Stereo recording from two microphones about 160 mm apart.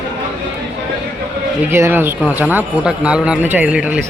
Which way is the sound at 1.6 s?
15° right (ahead or behind).